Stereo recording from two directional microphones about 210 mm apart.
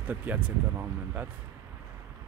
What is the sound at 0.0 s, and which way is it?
Speech, 10° right (ahead or behind).